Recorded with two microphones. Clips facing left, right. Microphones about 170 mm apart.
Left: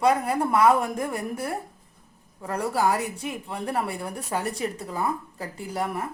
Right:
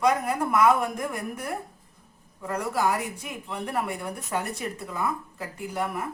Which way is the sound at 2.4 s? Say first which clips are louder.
Left 2 dB; 30° left (ahead or behind).